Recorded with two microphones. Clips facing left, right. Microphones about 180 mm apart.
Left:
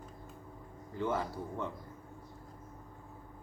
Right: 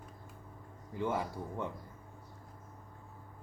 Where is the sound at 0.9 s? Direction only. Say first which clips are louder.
Left 1 dB; 15° right (ahead or behind).